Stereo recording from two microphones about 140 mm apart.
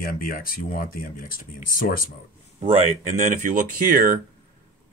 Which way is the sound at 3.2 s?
65° right (ahead or behind).